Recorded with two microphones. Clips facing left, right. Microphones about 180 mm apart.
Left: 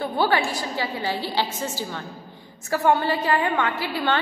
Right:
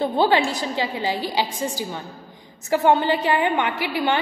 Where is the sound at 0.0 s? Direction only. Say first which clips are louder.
Right 3 dB; 20° right (ahead or behind).